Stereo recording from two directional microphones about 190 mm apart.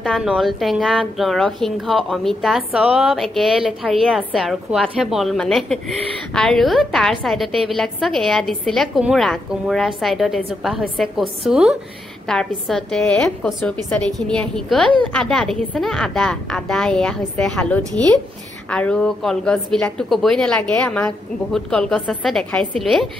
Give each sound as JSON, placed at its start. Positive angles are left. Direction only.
{"t": 0.0, "sound": "a woman's voice", "side_deg": 0}